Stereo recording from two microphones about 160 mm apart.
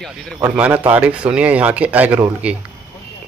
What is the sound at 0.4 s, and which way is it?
Speech, 10° right (ahead or behind).